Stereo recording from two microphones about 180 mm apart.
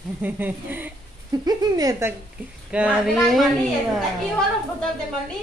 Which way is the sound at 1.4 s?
20° right (ahead or behind).